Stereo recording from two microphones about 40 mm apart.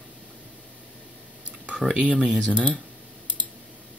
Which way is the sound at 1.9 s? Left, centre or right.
Right.